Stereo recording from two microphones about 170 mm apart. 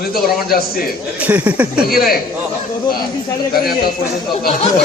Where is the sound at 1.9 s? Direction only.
60° left (ahead or behind).